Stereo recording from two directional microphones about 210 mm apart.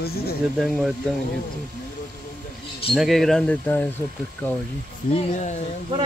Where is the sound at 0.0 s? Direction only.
45° left (ahead or behind).